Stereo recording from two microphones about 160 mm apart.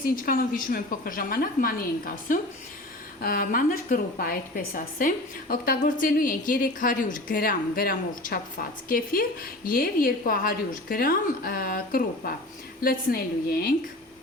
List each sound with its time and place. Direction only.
0.0 s a woman's voice: 65° left (ahead or behind)